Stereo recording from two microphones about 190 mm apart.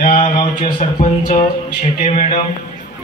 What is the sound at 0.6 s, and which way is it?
A man's voice, 35° left (ahead or behind).